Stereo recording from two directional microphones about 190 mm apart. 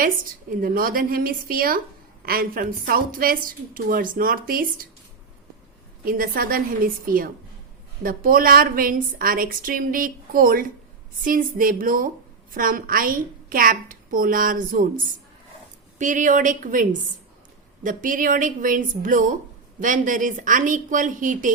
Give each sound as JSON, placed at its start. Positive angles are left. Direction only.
{"t": 0.5, "sound": "a woman's voice", "side_deg": -50}
{"t": 6.1, "sound": "a woman's voice", "side_deg": -50}
{"t": 16.0, "sound": "a woman's voice", "side_deg": -40}
{"t": 17.8, "sound": "a woman's voice", "side_deg": -45}